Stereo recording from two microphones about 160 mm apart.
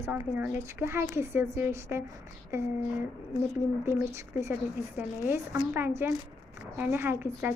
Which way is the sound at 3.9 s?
15° right (ahead or behind).